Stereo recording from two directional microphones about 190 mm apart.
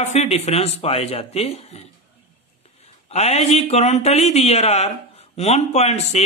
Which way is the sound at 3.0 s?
35° left (ahead or behind).